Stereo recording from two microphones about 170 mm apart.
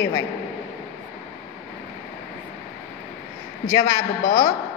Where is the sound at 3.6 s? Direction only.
20° left (ahead or behind).